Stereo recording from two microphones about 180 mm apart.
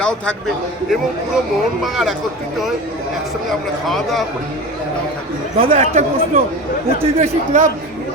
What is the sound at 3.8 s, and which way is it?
Speech, centre (ahead or behind).